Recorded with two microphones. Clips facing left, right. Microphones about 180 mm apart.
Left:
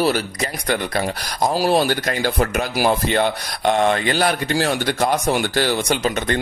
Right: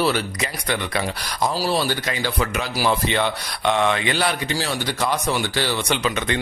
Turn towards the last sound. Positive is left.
turn(degrees=45)  # may be behind; listen again after turning